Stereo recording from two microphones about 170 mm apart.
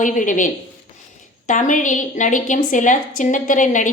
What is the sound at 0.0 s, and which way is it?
A woman's voice, 50° left (ahead or behind).